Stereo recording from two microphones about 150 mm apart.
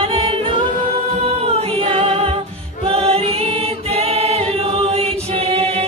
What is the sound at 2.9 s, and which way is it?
Choir, 40° right (ahead or behind).